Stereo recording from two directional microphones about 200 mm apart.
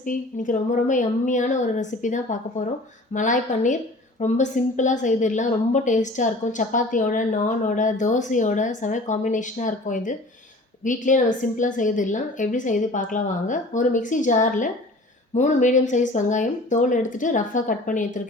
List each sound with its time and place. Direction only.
0.0 s a woman's voice: 40° left (ahead or behind)